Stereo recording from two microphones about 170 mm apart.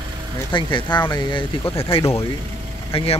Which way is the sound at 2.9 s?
35° left (ahead or behind).